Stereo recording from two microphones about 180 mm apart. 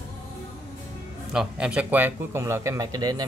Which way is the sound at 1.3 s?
5° right (ahead or behind).